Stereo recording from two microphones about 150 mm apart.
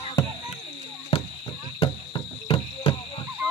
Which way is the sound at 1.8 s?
35° left (ahead or behind).